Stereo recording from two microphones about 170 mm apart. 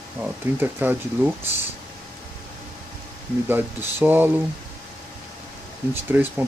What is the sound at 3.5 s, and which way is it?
Speech, 10° right (ahead or behind).